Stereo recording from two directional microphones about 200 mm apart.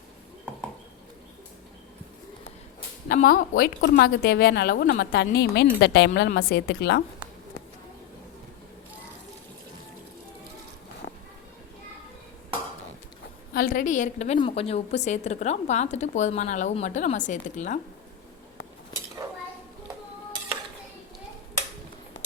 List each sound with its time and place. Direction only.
3.1 s speech: 45° left (ahead or behind)
3.8 s a woman's voice: 55° left (ahead or behind)
13.5 s a woman's voice: 45° left (ahead or behind)